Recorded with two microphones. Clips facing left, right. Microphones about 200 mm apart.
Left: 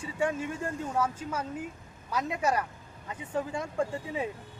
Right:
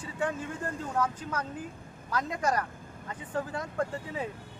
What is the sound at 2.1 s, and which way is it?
Speech, 10° left (ahead or behind).